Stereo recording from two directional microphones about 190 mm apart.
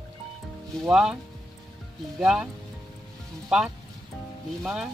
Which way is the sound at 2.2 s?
Centre (ahead or behind).